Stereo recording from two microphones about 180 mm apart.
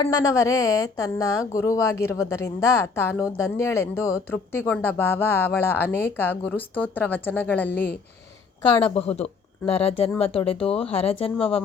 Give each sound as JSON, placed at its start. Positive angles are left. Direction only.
{"t": 0.1, "sound": "speech", "side_deg": 20}
{"t": 9.0, "sound": "speech", "side_deg": 35}